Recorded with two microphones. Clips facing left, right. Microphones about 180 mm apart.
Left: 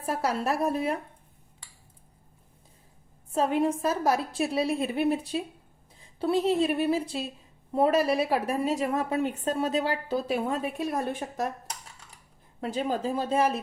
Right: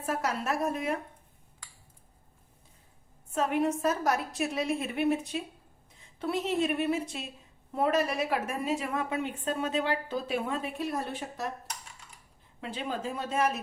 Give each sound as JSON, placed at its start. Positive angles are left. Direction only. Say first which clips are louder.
{"t": 0.0, "sound": "a woman's voice", "louder": "left 3 dB", "side_deg": 35}
{"t": 3.3, "sound": "a woman's voice", "louder": "left 3 dB", "side_deg": 30}
{"t": 12.5, "sound": "a woman's voice", "louder": "left 6 dB", "side_deg": 40}